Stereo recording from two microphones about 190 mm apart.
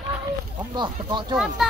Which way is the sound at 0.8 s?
25° right (ahead or behind).